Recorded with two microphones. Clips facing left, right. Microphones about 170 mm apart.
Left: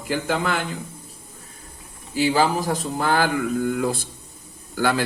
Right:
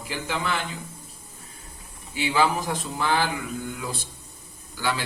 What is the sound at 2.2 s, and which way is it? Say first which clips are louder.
A man's voice: left 4 dB; 40° left (ahead or behind).